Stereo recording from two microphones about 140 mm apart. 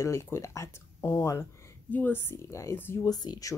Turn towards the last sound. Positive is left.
turn(degrees=25)  # may be behind; listen again after turning